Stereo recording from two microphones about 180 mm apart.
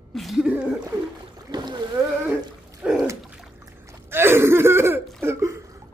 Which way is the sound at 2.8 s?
5° right (ahead or behind).